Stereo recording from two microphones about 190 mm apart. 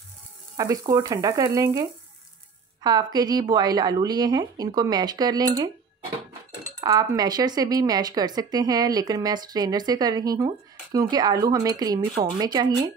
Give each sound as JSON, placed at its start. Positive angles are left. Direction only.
{"t": 0.6, "sound": "speech", "side_deg": -20}
{"t": 6.8, "sound": "speech", "side_deg": -20}